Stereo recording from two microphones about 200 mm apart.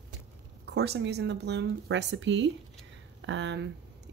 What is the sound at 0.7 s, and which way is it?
Speech, 55° right (ahead or behind).